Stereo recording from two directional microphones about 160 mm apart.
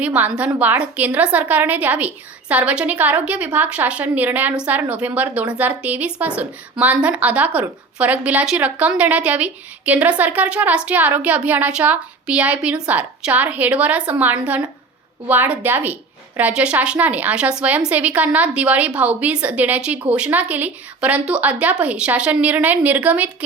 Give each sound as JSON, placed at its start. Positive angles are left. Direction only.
{"t": 0.0, "sound": "a woman's voice", "side_deg": -10}